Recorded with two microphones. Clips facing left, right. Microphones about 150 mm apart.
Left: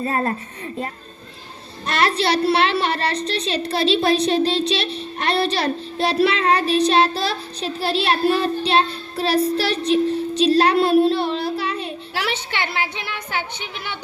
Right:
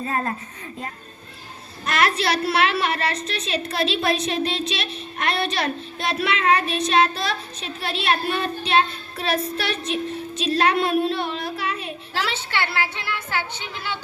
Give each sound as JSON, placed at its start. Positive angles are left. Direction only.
{"t": 0.0, "sound": "a woman's voice", "side_deg": 35}
{"t": 1.9, "sound": "a woman's voice", "side_deg": 30}
{"t": 12.1, "sound": "a woman's voice", "side_deg": 15}